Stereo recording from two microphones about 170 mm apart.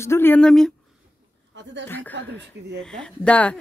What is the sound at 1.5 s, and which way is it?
Speech, 90° right.